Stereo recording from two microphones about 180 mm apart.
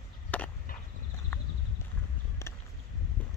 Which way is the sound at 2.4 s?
15° left (ahead or behind).